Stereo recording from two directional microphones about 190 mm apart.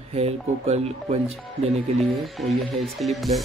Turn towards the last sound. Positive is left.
turn(degrees=0)  # may be behind; listen again after turning